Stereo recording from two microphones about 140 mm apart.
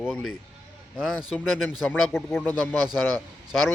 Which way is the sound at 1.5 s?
Centre (ahead or behind).